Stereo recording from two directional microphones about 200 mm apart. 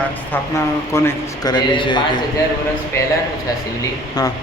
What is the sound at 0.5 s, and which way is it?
A man's voice, 15° left (ahead or behind).